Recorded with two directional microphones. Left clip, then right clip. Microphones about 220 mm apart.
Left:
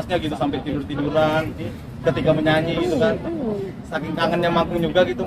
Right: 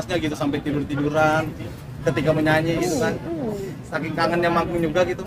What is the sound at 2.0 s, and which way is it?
A woman's voice, 20° right (ahead or behind).